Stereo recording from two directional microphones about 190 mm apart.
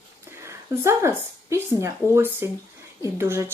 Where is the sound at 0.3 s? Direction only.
15° right (ahead or behind).